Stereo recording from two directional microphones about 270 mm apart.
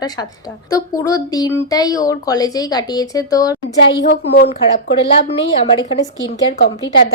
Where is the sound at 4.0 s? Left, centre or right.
Left.